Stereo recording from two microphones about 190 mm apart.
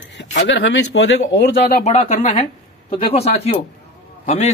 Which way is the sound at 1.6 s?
35° left (ahead or behind).